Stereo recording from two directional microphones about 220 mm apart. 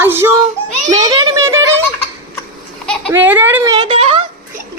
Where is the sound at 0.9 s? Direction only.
15° right (ahead or behind).